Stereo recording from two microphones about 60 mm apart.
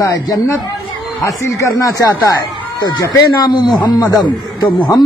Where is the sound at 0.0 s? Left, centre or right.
Left.